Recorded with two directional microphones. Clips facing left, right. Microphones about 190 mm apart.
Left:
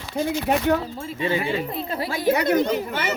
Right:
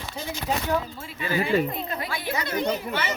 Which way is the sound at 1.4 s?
40° right (ahead or behind).